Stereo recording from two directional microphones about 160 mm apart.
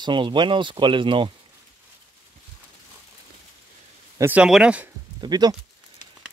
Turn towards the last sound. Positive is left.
turn(degrees=-25)  # may be behind; listen again after turning